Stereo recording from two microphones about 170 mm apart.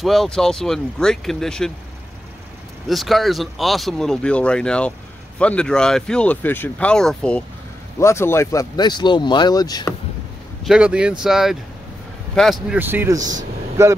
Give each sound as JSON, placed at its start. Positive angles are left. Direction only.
{"t": 0.0, "sound": "speech", "side_deg": 0}
{"t": 2.9, "sound": "speech", "side_deg": 0}
{"t": 8.0, "sound": "speech", "side_deg": 15}
{"t": 10.6, "sound": "speech", "side_deg": -5}
{"t": 12.7, "sound": "a man's voice", "side_deg": -10}